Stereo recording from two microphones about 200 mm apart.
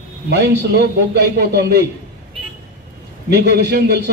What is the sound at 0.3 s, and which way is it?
A man's voice, 55° right (ahead or behind).